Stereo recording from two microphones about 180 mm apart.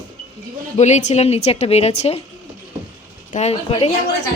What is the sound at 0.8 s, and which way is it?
Speech, 40° left (ahead or behind).